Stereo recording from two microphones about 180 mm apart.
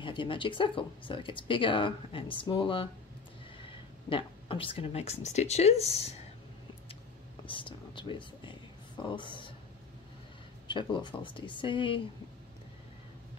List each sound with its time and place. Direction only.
0.0 s speech: 30° left (ahead or behind)
4.1 s speech: 30° left (ahead or behind)
7.4 s a sound: 30° left (ahead or behind)
10.7 s speech: 25° left (ahead or behind)